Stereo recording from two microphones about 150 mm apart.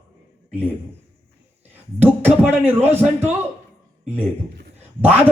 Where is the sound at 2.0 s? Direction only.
10° right (ahead or behind).